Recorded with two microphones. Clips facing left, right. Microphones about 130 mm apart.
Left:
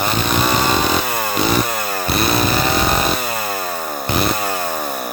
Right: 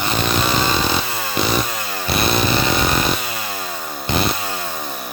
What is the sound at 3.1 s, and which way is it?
Chainsaw, 50° left (ahead or behind).